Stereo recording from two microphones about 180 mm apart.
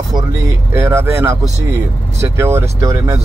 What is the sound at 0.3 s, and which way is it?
Speech, 15° right (ahead or behind).